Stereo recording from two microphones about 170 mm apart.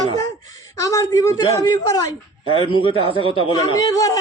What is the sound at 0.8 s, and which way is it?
Speech, 20° left (ahead or behind).